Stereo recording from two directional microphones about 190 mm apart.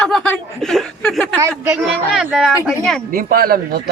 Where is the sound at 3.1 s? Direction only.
50° right (ahead or behind).